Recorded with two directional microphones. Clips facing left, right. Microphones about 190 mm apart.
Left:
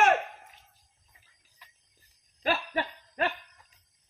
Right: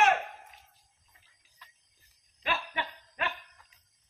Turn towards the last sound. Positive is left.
turn(degrees=40)  # may be behind; listen again after turning